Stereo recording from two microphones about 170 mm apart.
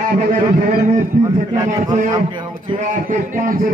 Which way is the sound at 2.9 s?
50° right (ahead or behind).